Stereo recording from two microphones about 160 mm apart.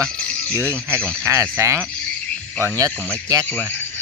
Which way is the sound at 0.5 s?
15° right (ahead or behind).